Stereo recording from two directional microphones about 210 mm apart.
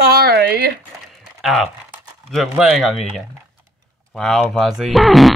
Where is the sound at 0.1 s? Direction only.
50° right (ahead or behind).